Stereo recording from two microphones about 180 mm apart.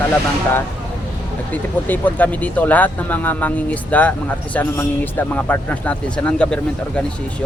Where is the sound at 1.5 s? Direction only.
10° left (ahead or behind).